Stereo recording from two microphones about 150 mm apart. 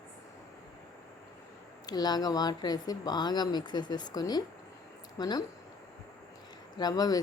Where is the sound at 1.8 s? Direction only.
25° left (ahead or behind).